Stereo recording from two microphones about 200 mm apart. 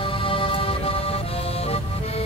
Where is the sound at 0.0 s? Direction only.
25° left (ahead or behind).